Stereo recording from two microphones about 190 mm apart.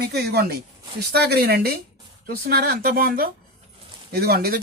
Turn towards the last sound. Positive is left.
turn(degrees=-55)  # may be behind; listen again after turning